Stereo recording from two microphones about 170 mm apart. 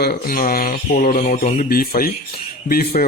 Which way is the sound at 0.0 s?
65° left (ahead or behind).